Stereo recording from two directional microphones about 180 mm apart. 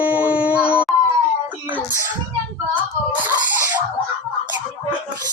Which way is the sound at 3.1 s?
10° right (ahead or behind).